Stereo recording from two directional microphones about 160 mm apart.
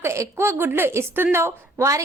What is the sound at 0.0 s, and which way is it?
A woman's voice, 15° right (ahead or behind).